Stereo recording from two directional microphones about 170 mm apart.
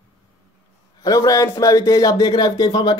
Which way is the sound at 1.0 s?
20° left (ahead or behind).